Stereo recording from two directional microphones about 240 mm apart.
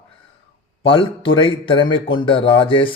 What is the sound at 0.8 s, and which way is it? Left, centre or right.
Speech, left.